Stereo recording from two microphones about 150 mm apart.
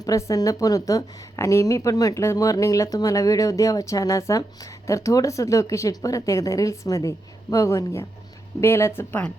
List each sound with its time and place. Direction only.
0.0 s a woman's voice: 20° left (ahead or behind)